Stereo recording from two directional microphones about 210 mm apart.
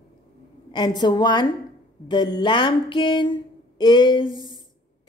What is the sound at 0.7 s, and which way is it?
Speech, 20° left (ahead or behind).